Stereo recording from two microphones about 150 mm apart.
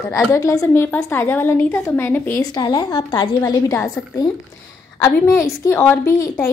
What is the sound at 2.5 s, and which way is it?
A woman's voice, 25° left (ahead or behind).